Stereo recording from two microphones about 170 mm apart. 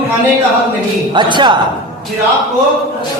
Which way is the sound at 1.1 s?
25° right (ahead or behind).